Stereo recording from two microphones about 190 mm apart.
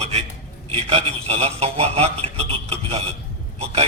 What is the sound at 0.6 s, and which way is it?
A man's voice, 30° right (ahead or behind).